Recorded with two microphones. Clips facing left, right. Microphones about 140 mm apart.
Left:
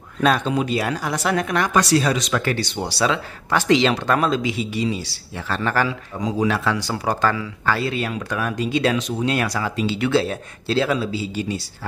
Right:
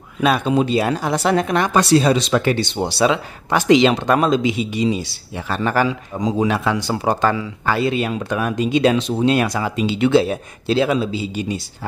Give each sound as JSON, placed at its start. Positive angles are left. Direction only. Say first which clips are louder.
{"t": 0.2, "sound": "speech", "louder": "right 2 dB", "side_deg": -10}
{"t": 0.6, "sound": "speech", "louder": "right 5 dB", "side_deg": -25}